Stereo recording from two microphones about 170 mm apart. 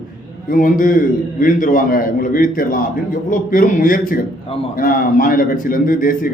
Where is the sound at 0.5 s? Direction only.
55° left (ahead or behind).